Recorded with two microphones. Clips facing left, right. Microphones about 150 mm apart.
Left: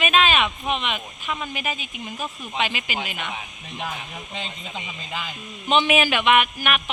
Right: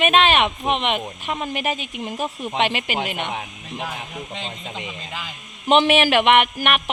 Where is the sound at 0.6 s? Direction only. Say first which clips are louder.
Right 5 dB; 70° right (ahead or behind).